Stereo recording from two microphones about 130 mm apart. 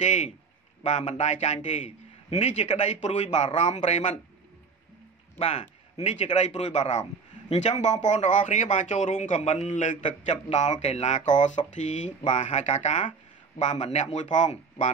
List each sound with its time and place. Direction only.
0.0 s a man's voice: 70° left (ahead or behind)
5.4 s a man's voice: 60° left (ahead or behind)